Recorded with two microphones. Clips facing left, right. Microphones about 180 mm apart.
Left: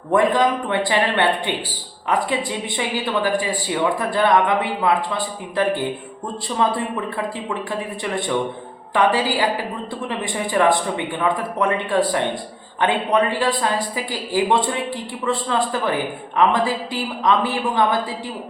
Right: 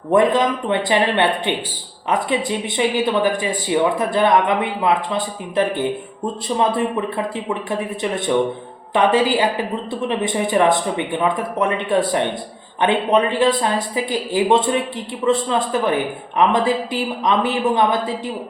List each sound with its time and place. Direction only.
0.1 s speech: 20° right (ahead or behind)